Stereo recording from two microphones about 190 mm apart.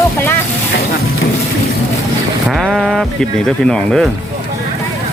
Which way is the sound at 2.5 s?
Centre (ahead or behind).